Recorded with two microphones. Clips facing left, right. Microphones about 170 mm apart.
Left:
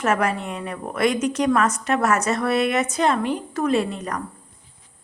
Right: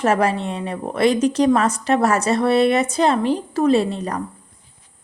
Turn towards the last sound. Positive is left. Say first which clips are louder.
# right 4 dB
turn(degrees=-30)  # may be behind; listen again after turning